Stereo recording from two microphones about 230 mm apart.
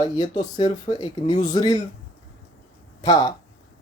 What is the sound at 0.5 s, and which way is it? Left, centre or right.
Speech, centre.